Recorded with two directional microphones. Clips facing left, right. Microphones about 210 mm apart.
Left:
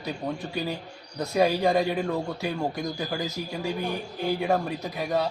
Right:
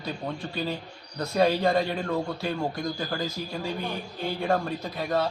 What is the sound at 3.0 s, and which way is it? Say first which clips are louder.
Speech: even; 20° left (ahead or behind).